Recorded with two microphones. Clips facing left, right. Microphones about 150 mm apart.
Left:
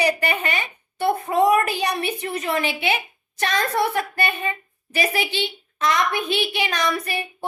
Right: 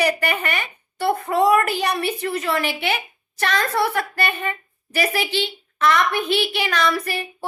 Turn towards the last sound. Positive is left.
turn(degrees=20)  # may be behind; listen again after turning